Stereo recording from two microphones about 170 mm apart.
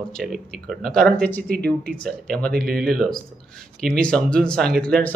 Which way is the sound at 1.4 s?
60° right (ahead or behind).